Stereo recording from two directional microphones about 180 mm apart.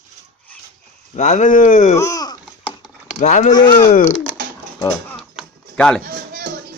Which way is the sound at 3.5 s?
25° left (ahead or behind).